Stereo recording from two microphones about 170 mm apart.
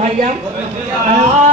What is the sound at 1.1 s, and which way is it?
Speech, 40° right (ahead or behind).